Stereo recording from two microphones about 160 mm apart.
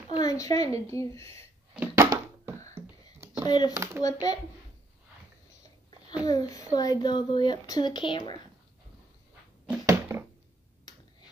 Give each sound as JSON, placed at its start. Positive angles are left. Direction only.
{"t": 0.1, "sound": "speech", "side_deg": 20}
{"t": 2.0, "sound": "a sound", "side_deg": -15}
{"t": 3.4, "sound": "a child's voice", "side_deg": 25}
{"t": 3.7, "sound": "speech", "side_deg": -20}
{"t": 4.0, "sound": "speech", "side_deg": 25}
{"t": 6.2, "sound": "speech", "side_deg": 25}
{"t": 9.8, "sound": "a sound", "side_deg": -15}